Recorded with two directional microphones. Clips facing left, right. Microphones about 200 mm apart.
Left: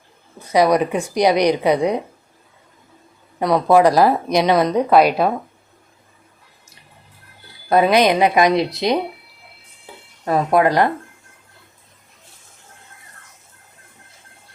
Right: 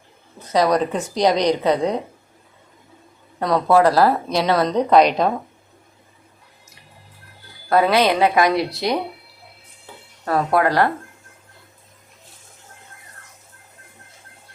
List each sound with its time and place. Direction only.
0.3 s a woman's voice: 10° left (ahead or behind)
3.3 s a woman's voice: 10° left (ahead or behind)
7.7 s a woman's voice: 20° left (ahead or behind)
10.2 s a woman's voice: 15° left (ahead or behind)